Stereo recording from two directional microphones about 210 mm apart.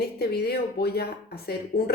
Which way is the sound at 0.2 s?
50° left (ahead or behind).